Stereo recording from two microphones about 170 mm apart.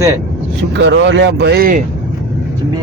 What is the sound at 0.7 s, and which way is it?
Speech, 90° right.